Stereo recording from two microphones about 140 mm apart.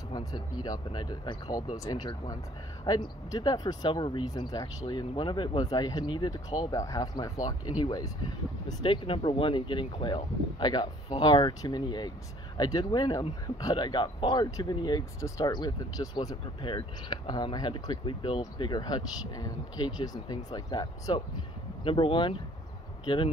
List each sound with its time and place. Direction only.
0.1 s speech: 25° left (ahead or behind)